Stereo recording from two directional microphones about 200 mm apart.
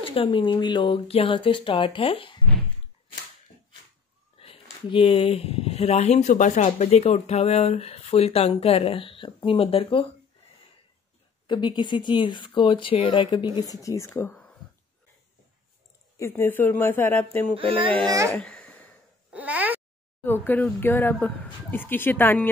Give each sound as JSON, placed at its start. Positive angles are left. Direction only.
{"t": 0.0, "sound": "speech", "side_deg": 25}
{"t": 4.4, "sound": "speech", "side_deg": 25}
{"t": 11.4, "sound": "speech", "side_deg": 20}
{"t": 16.2, "sound": "speech", "side_deg": 10}
{"t": 17.6, "sound": "a child's voice", "side_deg": -25}
{"t": 18.3, "sound": "babbling", "side_deg": 5}
{"t": 19.3, "sound": "babbling", "side_deg": -10}
{"t": 20.2, "sound": "speech", "side_deg": 10}